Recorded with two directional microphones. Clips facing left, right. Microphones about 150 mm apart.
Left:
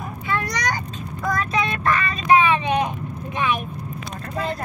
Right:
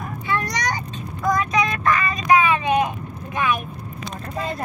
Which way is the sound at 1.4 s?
30° left (ahead or behind).